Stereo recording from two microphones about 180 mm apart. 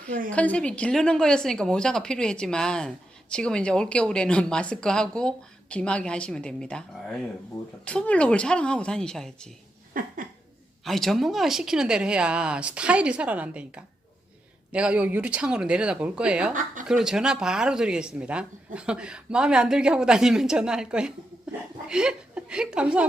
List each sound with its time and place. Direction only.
0.3 s speech: 5° left (ahead or behind)
10.0 s a sound: 50° right (ahead or behind)
10.8 s speech: centre (ahead or behind)